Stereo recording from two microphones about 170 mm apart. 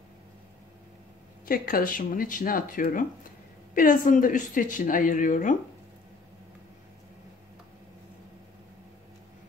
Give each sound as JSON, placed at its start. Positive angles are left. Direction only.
{"t": 1.4, "sound": "speech", "side_deg": 55}